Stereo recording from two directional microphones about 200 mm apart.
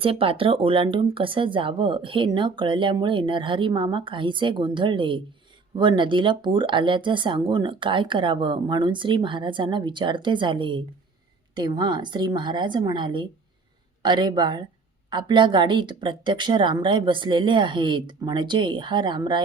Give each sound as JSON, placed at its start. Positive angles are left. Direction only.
{"t": 0.0, "sound": "speech", "side_deg": -25}